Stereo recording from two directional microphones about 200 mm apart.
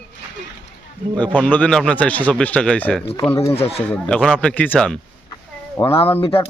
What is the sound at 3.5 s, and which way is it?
Speech, 30° left (ahead or behind).